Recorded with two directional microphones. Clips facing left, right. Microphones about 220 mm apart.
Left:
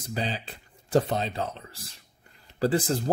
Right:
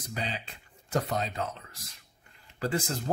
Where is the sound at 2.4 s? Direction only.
35° left (ahead or behind).